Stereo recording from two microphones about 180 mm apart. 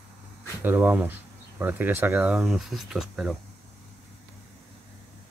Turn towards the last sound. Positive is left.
turn(degrees=0)  # may be behind; listen again after turning